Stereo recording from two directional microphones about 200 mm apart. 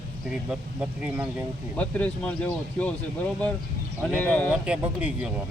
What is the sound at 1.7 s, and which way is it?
Speech, 5° left (ahead or behind).